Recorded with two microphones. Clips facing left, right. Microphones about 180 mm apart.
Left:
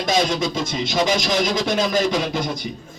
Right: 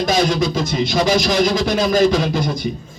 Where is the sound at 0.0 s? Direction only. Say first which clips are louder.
Right 3 dB; 20° left (ahead or behind).